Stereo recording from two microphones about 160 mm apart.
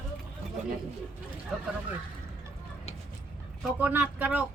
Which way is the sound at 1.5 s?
Centre (ahead or behind).